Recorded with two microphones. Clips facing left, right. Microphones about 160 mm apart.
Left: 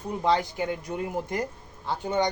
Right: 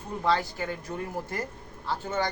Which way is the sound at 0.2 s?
20° left (ahead or behind).